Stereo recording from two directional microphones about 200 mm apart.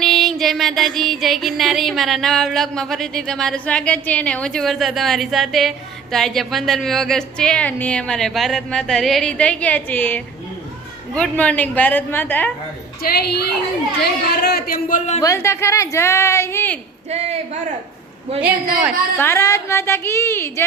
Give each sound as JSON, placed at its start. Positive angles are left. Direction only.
{"t": 0.0, "sound": "music", "side_deg": 0}
{"t": 11.1, "sound": "a woman's voice", "side_deg": 5}
{"t": 13.0, "sound": "a man's voice", "side_deg": 50}
{"t": 15.2, "sound": "a woman's voice", "side_deg": 15}
{"t": 17.1, "sound": "speech", "side_deg": -30}
{"t": 19.1, "sound": "a woman's voice", "side_deg": 10}